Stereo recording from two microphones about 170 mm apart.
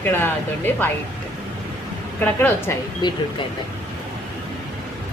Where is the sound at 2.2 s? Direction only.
10° left (ahead or behind).